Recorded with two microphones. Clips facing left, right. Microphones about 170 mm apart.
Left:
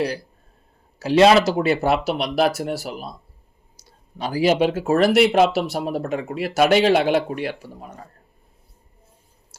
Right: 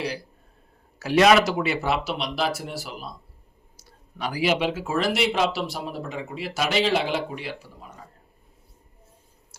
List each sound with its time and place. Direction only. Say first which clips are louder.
0.9 s speech: left 3 dB; 30° left (ahead or behind)
1.5 s speech: left 6 dB; 45° left (ahead or behind); by 2.8 s 65° left (ahead or behind)
3.8 s a sound: left 3 dB; 40° left (ahead or behind)
4.9 s speech: left 9 dB; 60° left (ahead or behind)